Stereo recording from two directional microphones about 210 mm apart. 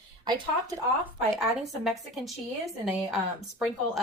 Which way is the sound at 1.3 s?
Centre (ahead or behind).